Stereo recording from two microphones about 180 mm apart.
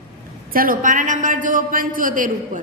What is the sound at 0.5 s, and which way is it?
A woman's voice, 50° right (ahead or behind).